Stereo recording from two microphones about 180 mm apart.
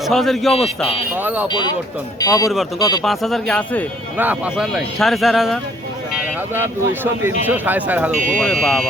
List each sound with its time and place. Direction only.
0.1 s speech: centre (ahead or behind)
1.1 s speech: 10° right (ahead or behind)
2.2 s speech: 20° left (ahead or behind)
3.0 s speech: centre (ahead or behind)
4.2 s speech: 5° right (ahead or behind)
6.5 s speech: 10° right (ahead or behind)
8.1 s speech: 45° right (ahead or behind)
8.6 s speech: centre (ahead or behind)